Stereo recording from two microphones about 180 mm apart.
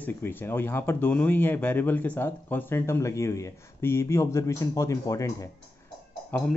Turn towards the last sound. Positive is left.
turn(degrees=10)  # may be behind; listen again after turning